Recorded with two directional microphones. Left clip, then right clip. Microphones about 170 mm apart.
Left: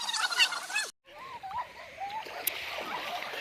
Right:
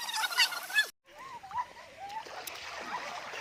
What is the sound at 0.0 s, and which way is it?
Gobble, centre (ahead or behind).